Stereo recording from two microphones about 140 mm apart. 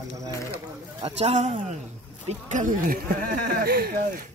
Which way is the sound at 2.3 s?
65° right (ahead or behind).